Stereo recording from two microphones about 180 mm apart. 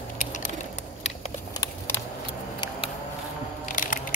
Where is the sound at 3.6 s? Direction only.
45° left (ahead or behind).